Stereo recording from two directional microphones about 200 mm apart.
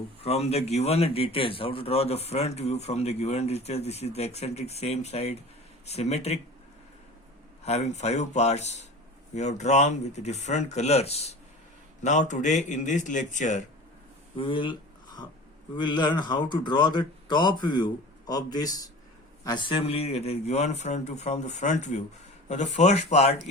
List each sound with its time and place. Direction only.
0.2 s a man's voice: 30° left (ahead or behind)
7.6 s a man's voice: 35° left (ahead or behind)
14.3 s a sound: 25° left (ahead or behind)
15.7 s a man's voice: 20° left (ahead or behind)